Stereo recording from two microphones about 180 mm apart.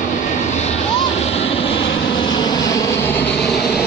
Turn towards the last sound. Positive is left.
turn(degrees=0)  # may be behind; listen again after turning